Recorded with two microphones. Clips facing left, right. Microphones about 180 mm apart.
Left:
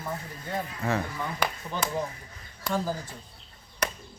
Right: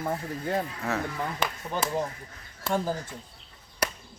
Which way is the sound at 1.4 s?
25° right (ahead or behind).